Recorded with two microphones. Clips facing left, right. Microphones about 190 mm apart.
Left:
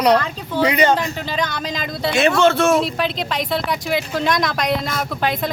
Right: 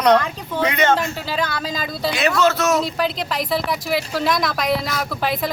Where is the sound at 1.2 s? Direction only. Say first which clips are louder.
Even; 5° right (ahead or behind).